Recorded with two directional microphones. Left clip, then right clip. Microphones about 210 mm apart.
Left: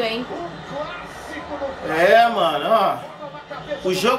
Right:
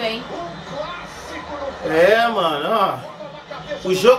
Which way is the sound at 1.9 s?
Centre (ahead or behind).